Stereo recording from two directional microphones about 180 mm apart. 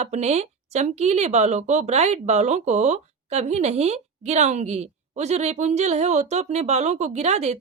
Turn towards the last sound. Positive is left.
turn(degrees=-40)  # may be behind; listen again after turning